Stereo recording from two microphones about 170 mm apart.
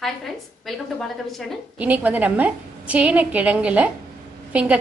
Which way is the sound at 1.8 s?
10° right (ahead or behind).